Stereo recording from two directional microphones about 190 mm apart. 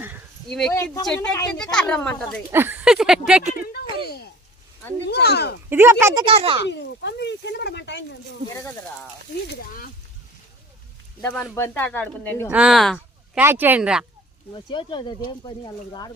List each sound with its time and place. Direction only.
0.7 s speech: 15° left (ahead or behind)
1.0 s speech: 5° left (ahead or behind)
2.5 s speech: 10° right (ahead or behind)
5.0 s speech: 60° left (ahead or behind)
5.6 s speech: 10° right (ahead or behind)
6.2 s a child's voice: 30° right (ahead or behind)
6.7 s speech: 65° left (ahead or behind)
9.5 s speech: 50° left (ahead or behind)
11.2 s speech: 10° left (ahead or behind)
12.5 s speech: 5° right (ahead or behind)
13.4 s speech: 10° right (ahead or behind)
14.5 s speech: 25° left (ahead or behind)